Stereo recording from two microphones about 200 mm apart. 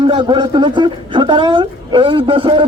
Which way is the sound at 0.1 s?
25° right (ahead or behind).